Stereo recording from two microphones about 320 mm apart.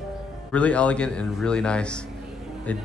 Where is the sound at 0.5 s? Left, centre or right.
Centre.